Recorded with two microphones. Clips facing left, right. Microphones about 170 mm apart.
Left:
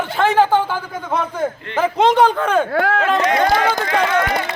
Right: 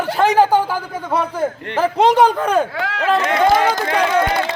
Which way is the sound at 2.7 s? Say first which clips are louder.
Left 6 dB; 50° left (ahead or behind).